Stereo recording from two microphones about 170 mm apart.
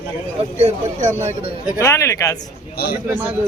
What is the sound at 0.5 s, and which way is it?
Speech, 45° right (ahead or behind).